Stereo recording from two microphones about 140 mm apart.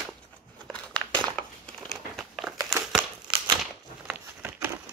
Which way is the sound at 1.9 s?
Centre (ahead or behind).